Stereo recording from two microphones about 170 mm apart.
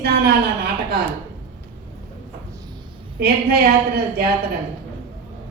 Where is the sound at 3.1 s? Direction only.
70° right (ahead or behind).